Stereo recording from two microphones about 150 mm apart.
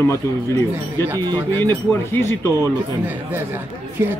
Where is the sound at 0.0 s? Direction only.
20° left (ahead or behind).